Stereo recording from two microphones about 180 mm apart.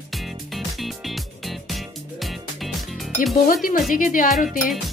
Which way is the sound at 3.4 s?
50° left (ahead or behind).